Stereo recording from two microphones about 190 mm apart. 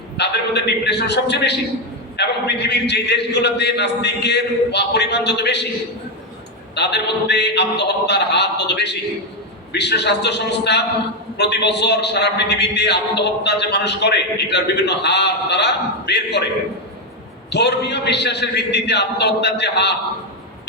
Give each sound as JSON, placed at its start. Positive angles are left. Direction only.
{"t": 0.2, "sound": "a man's voice", "side_deg": 60}
{"t": 6.7, "sound": "a man's voice", "side_deg": 65}
{"t": 17.5, "sound": "a man's voice", "side_deg": 65}